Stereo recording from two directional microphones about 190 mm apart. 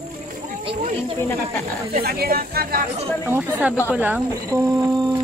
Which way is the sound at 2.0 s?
55° right (ahead or behind).